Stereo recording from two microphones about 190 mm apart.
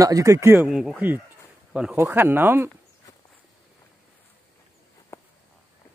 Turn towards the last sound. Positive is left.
turn(degrees=15)  # may be behind; listen again after turning